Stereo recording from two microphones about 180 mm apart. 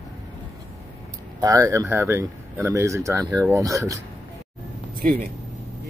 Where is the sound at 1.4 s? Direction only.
20° right (ahead or behind).